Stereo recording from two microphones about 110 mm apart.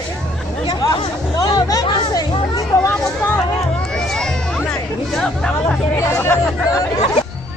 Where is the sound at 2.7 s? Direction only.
10° left (ahead or behind).